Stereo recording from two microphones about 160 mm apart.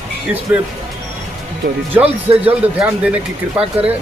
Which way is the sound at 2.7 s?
10° right (ahead or behind).